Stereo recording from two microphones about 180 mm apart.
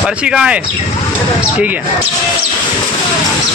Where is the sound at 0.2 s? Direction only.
5° right (ahead or behind).